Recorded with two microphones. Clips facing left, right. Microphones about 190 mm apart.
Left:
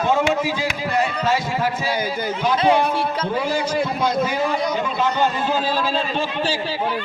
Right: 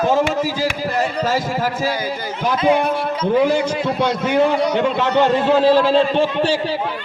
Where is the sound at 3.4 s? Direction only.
60° right (ahead or behind).